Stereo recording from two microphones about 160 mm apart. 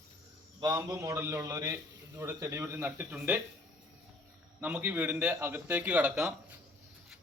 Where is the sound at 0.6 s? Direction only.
25° right (ahead or behind).